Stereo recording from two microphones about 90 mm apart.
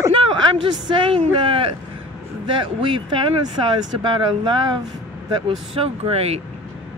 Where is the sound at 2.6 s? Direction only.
65° right (ahead or behind).